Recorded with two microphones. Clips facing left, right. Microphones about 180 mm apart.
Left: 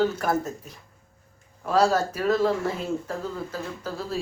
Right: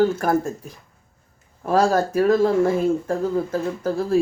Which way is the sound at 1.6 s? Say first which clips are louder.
Right 3 dB; 50° right (ahead or behind).